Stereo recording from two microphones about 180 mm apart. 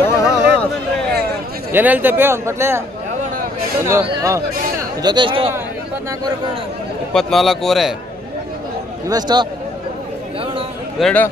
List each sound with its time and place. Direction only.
0.0 s a sound: 10° left (ahead or behind)
1.7 s speech: 10° right (ahead or behind)
3.9 s speech: 20° right (ahead or behind)
7.2 s a man's voice: centre (ahead or behind)
9.1 s speech: 25° right (ahead or behind)
11.0 s a man's voice: 5° left (ahead or behind)